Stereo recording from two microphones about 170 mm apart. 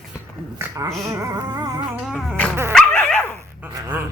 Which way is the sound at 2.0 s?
Centre (ahead or behind).